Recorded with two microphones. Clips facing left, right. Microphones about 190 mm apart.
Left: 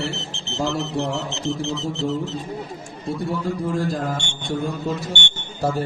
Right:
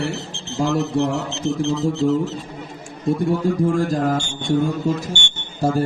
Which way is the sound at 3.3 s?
45° right (ahead or behind).